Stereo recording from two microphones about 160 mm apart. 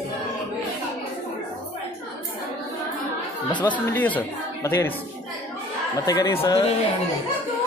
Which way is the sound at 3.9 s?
10° left (ahead or behind).